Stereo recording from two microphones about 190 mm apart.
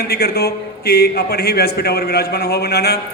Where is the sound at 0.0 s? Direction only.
55° left (ahead or behind).